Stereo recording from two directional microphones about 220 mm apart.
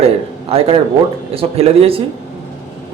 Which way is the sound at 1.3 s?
25° right (ahead or behind).